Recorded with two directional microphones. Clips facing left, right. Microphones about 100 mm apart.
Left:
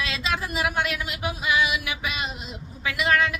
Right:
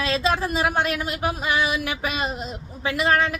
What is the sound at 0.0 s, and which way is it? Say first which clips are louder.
Speech: right 6 dB; 35° right (ahead or behind).